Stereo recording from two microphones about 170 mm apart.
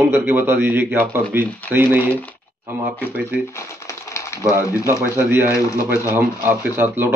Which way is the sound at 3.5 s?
15° left (ahead or behind).